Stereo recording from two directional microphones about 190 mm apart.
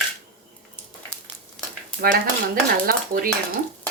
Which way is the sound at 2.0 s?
50° right (ahead or behind).